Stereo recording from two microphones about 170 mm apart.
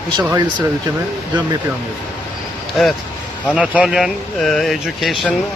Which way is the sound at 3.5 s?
5° right (ahead or behind).